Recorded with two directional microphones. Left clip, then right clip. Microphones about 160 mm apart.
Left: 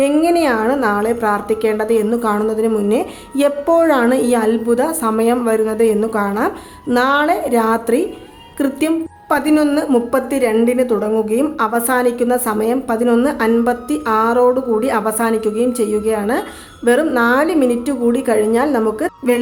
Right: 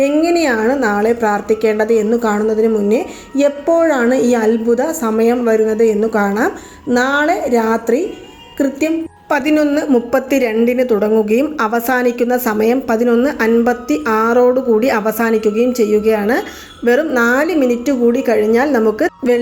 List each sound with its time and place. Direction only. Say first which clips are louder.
0.2 s a woman's voice: right 1 dB; 15° right (ahead or behind)